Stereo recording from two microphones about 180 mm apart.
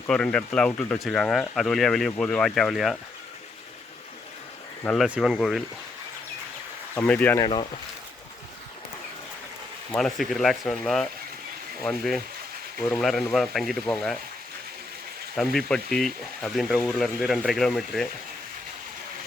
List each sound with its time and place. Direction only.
0.1 s speech: 5° left (ahead or behind)
4.8 s speech: 10° left (ahead or behind)
5.0 s speech: 5° right (ahead or behind)
6.9 s speech: 10° left (ahead or behind)
7.3 s speech: 25° left (ahead or behind)
9.9 s speech: centre (ahead or behind)
15.4 s speech: 5° left (ahead or behind)